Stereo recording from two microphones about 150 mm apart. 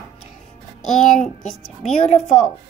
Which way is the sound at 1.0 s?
55° left (ahead or behind).